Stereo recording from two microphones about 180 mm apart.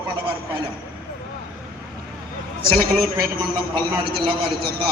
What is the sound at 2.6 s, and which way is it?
Speech, 55° right (ahead or behind).